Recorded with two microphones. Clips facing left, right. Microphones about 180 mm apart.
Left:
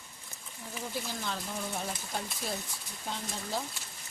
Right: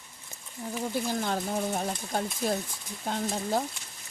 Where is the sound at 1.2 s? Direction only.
50° right (ahead or behind).